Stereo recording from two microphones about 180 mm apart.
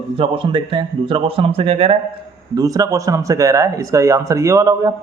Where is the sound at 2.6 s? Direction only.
20° right (ahead or behind).